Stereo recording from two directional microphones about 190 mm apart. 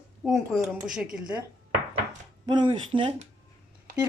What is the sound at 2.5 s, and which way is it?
Speech, 25° right (ahead or behind).